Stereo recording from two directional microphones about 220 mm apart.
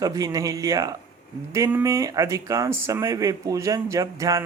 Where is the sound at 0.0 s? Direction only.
15° right (ahead or behind).